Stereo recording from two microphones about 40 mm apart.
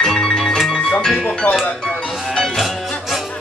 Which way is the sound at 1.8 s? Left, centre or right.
Centre.